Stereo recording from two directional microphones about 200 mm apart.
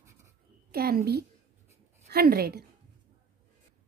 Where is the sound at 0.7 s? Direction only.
50° right (ahead or behind).